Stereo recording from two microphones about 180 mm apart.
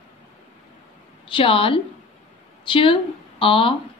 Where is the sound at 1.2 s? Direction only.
30° left (ahead or behind).